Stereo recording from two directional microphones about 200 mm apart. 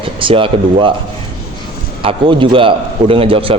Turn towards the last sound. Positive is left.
turn(degrees=-30)  # may be behind; listen again after turning